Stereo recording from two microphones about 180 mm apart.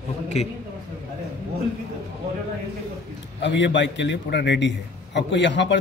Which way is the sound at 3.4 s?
85° left.